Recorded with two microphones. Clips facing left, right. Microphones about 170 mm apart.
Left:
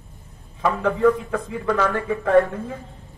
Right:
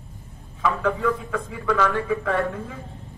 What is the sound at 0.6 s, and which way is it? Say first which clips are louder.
A man's voice: left 5 dB; 45° left (ahead or behind).